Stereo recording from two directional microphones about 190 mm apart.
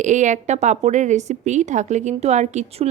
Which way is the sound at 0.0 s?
40° right (ahead or behind).